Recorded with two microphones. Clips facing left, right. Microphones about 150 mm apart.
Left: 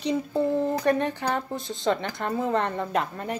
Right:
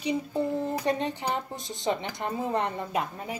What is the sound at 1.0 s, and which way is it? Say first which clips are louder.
Speech: left 3 dB; 15° right (ahead or behind).